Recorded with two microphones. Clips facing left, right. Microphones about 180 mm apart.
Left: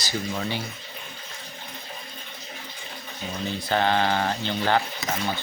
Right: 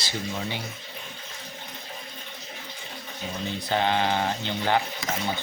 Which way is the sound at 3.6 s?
20° right (ahead or behind).